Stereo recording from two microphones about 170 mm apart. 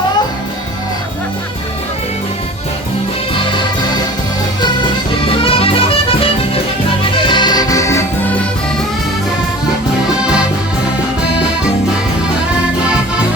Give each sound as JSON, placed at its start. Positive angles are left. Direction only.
{"t": 3.3, "sound": "music", "side_deg": 30}
{"t": 5.2, "sound": "music", "side_deg": 35}